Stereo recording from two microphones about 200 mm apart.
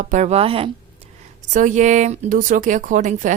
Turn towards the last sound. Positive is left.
turn(degrees=-40)  # may be behind; listen again after turning